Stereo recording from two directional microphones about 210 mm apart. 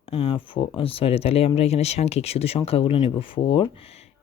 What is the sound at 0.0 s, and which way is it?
Speech, 25° left (ahead or behind).